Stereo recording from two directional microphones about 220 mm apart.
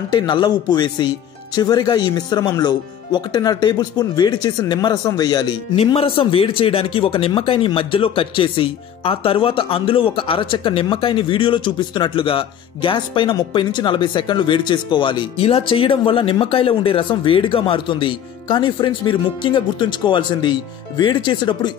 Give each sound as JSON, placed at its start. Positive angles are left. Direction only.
{"t": 0.1, "sound": "speech", "side_deg": 20}